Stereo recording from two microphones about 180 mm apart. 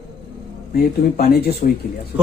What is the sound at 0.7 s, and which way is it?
Speech, 60° left (ahead or behind).